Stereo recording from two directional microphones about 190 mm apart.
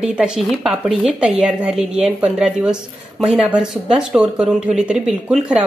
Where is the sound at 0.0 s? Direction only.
5° right (ahead or behind).